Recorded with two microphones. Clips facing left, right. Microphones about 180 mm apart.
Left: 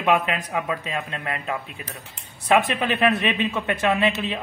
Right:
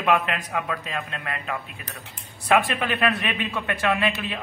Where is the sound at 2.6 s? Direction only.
20° left (ahead or behind).